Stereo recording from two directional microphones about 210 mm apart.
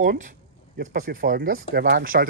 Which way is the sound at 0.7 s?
45° right (ahead or behind).